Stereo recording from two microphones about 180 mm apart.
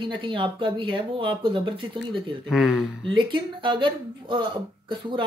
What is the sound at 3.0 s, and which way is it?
Speech, 25° right (ahead or behind).